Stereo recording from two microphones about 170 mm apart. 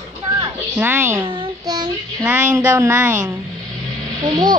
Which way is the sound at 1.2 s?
25° right (ahead or behind).